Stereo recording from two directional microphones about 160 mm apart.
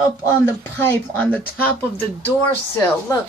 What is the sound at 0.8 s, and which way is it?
Speech, 10° left (ahead or behind).